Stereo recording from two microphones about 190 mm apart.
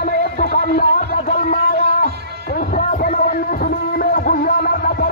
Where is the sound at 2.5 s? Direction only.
45° left (ahead or behind).